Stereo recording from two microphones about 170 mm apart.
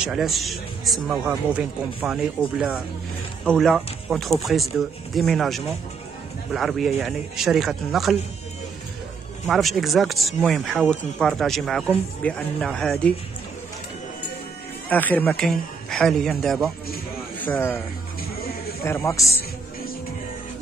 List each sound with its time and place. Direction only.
0.0 s speech: centre (ahead or behind)
3.4 s speech: centre (ahead or behind)
9.5 s speech: centre (ahead or behind)
14.9 s speech: 10° left (ahead or behind)
17.4 s speech: 10° left (ahead or behind)
18.9 s speech: 15° left (ahead or behind)